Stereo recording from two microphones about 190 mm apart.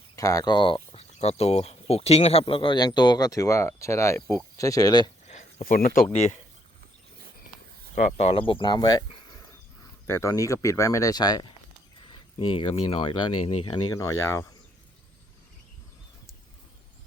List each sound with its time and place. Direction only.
0.2 s speech: 20° left (ahead or behind)
5.3 s a sound: 40° left (ahead or behind)
6.1 s speech: 35° left (ahead or behind)
8.2 s speech: 30° left (ahead or behind)
10.1 s speech: 15° left (ahead or behind)